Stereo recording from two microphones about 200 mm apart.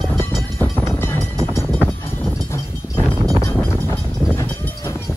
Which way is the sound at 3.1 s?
15° right (ahead or behind).